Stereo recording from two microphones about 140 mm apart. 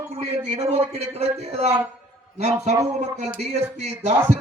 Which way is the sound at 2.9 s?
55° right (ahead or behind).